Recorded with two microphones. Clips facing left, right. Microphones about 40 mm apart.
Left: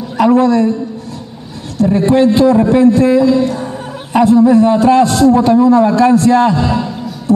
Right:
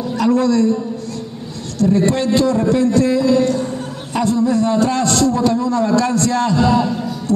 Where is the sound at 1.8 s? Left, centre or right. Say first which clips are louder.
Left 5 dB; centre.